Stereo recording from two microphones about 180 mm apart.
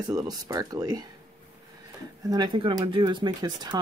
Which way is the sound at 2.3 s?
25° right (ahead or behind).